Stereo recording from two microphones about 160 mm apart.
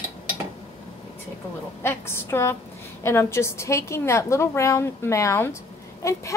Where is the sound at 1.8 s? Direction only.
15° left (ahead or behind).